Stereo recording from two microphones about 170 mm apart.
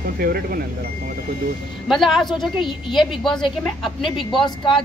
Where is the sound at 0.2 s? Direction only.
60° right (ahead or behind).